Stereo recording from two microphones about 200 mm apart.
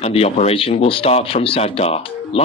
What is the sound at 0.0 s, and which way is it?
Speech, 30° left (ahead or behind).